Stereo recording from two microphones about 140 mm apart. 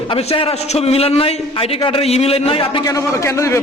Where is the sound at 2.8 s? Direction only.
20° left (ahead or behind).